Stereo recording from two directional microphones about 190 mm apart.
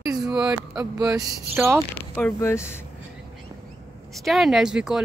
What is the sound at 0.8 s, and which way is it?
Speech, 20° right (ahead or behind).